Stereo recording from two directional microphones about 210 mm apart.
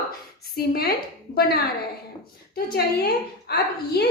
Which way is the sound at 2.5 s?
45° left (ahead or behind).